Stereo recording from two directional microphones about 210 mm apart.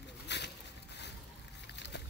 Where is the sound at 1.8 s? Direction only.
55° left (ahead or behind).